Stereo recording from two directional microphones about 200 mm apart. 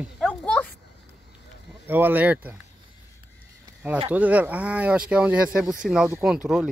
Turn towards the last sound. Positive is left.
turn(degrees=-5)  # may be behind; listen again after turning